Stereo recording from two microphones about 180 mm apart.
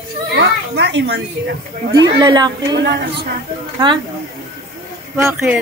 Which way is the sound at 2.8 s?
70° right (ahead or behind).